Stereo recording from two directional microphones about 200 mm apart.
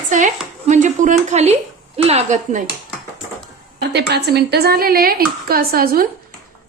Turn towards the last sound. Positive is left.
turn(degrees=-50)  # may be behind; listen again after turning